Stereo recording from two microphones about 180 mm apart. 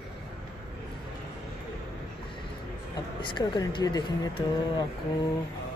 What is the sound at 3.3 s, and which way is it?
Speech, 25° left (ahead or behind).